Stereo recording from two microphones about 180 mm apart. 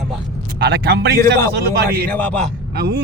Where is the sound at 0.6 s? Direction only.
70° right (ahead or behind).